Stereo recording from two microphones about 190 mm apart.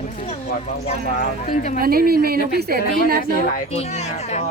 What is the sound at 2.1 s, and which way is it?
Speech, 55° right (ahead or behind).